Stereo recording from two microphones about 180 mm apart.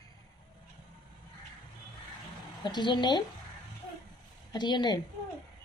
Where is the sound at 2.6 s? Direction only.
25° left (ahead or behind).